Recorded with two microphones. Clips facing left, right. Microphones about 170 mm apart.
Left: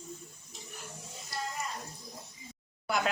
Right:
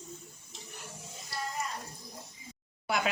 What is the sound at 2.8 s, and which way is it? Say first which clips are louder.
Speech: even; 5° right (ahead or behind).